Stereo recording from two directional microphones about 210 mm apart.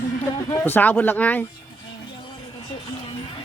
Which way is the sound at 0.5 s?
10° left (ahead or behind).